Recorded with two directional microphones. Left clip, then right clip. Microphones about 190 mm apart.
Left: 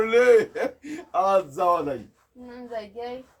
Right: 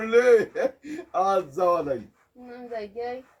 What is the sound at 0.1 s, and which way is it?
A man's voice, 25° left (ahead or behind).